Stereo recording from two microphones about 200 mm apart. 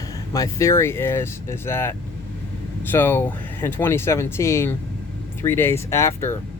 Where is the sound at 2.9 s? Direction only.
10° left (ahead or behind).